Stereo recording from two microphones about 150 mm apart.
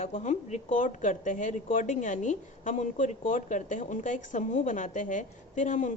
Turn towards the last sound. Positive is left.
turn(degrees=60)  # may be behind; listen again after turning